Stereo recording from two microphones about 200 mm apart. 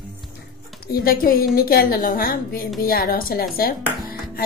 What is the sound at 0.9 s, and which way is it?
A woman's voice, 45° left (ahead or behind).